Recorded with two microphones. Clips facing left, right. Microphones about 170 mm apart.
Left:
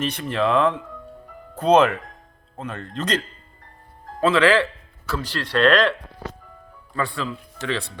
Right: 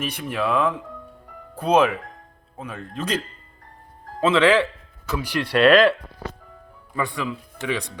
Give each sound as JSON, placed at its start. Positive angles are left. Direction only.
{"t": 0.0, "sound": "speech", "side_deg": -10}
{"t": 4.2, "sound": "a man's voice", "side_deg": -20}
{"t": 6.9, "sound": "speech", "side_deg": -15}